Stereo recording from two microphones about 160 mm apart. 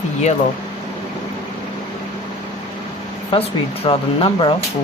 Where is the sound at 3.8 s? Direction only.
35° left (ahead or behind).